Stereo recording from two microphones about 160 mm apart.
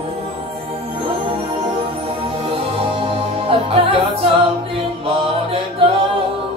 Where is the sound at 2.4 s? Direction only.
35° right (ahead or behind).